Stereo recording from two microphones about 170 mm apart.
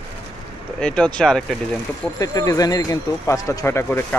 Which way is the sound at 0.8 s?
5° left (ahead or behind).